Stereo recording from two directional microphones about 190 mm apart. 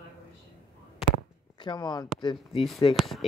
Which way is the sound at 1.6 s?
25° left (ahead or behind).